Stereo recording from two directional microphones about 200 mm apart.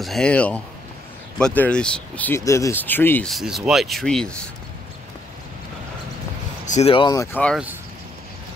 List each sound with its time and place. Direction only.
0.0 s speech: 5° left (ahead or behind)
6.6 s speech: 35° left (ahead or behind)
7.3 s speech: 5° left (ahead or behind)